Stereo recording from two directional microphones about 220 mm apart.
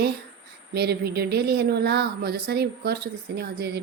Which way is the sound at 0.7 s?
45° right (ahead or behind).